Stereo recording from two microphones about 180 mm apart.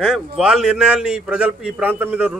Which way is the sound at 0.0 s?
Centre (ahead or behind).